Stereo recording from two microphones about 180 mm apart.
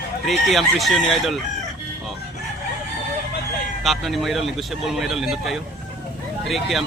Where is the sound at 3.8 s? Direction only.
Centre (ahead or behind).